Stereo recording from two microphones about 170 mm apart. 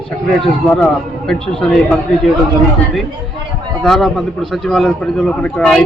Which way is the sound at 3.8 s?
Centre (ahead or behind).